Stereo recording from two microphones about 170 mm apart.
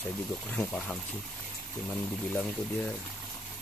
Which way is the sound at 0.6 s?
10° left (ahead or behind).